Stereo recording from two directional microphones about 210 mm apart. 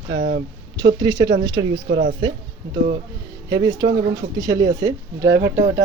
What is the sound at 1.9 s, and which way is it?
Speech, 65° right (ahead or behind).